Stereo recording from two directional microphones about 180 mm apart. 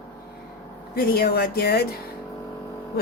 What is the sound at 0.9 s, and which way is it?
Speech, 60° left (ahead or behind).